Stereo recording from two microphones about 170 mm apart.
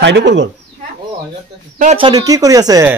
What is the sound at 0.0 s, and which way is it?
Speech, 90° right.